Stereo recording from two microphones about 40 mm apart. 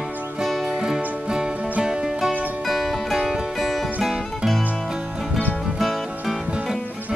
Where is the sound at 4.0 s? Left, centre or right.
Right; by 6.1 s centre.